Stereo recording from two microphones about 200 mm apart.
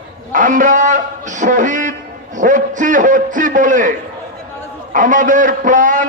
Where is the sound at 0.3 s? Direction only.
40° right (ahead or behind).